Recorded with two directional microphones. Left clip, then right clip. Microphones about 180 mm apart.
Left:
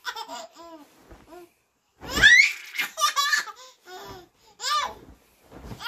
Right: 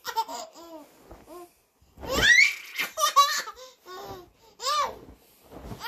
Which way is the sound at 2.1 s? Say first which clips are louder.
Left 3 dB; 10° left (ahead or behind).